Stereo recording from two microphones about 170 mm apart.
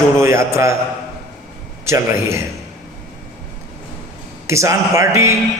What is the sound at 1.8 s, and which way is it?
Speech, 15° right (ahead or behind).